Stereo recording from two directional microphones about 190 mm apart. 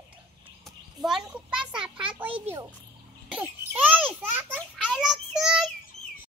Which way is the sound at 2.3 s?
30° right (ahead or behind).